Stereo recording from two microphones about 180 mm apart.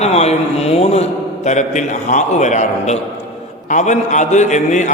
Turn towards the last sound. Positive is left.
turn(degrees=40)  # may be behind; listen again after turning